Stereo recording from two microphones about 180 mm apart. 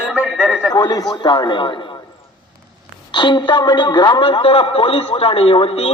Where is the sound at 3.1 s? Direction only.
25° left (ahead or behind).